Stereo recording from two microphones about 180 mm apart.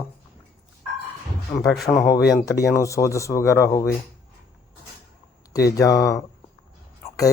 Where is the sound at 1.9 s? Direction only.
20° left (ahead or behind).